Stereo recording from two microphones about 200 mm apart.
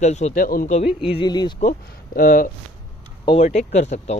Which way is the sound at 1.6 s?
40° left (ahead or behind).